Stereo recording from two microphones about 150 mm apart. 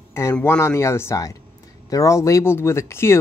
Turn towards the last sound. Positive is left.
turn(degrees=15)  # may be behind; listen again after turning